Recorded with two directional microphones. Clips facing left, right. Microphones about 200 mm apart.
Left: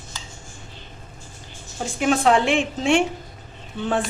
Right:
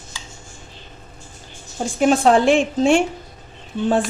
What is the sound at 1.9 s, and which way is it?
Speech, 35° right (ahead or behind).